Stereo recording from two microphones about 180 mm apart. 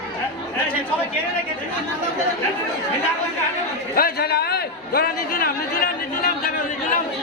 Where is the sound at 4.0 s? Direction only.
60° left (ahead or behind).